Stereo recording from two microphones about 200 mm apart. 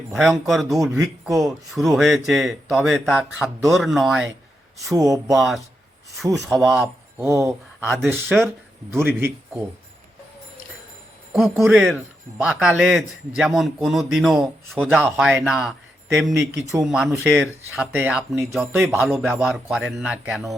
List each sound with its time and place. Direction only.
0.1 s speech: centre (ahead or behind)
4.9 s speech: 15° right (ahead or behind)
6.3 s speech: centre (ahead or behind)
6.8 s speech: 15° right (ahead or behind)
7.9 s speech: centre (ahead or behind)
8.1 s speech: 10° right (ahead or behind)
11.3 s speech: centre (ahead or behind)
16.8 s speech: 5° right (ahead or behind)